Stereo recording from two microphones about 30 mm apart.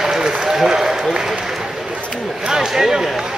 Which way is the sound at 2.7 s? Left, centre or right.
Centre.